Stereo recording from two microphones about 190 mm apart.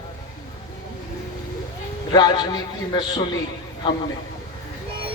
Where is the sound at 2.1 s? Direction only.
20° left (ahead or behind).